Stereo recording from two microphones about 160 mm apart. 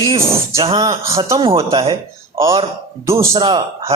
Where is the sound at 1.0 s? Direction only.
20° right (ahead or behind).